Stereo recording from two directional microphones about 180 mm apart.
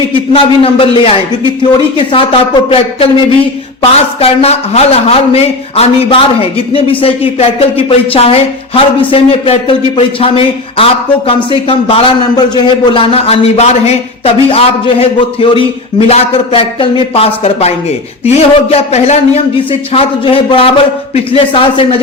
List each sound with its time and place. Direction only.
0.3 s a man's voice: 30° left (ahead or behind)
2.1 s a man's voice: 30° left (ahead or behind)